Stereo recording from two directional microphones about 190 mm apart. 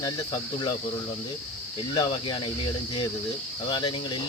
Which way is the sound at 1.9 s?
25° left (ahead or behind).